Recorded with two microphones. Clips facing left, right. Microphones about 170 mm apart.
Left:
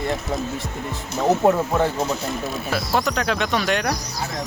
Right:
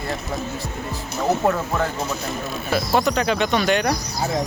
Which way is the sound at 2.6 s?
Centre (ahead or behind).